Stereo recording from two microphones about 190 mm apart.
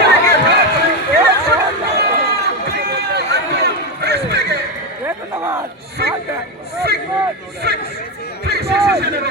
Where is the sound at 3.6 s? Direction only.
60° right (ahead or behind).